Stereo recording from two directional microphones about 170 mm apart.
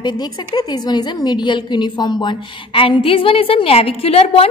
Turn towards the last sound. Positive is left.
turn(degrees=35)  # may be behind; listen again after turning